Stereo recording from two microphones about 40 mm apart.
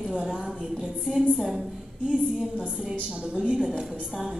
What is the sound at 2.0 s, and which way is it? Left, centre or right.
A woman's voice, right.